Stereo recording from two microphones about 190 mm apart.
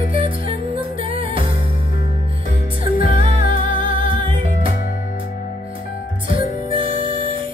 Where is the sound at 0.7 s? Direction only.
30° right (ahead or behind).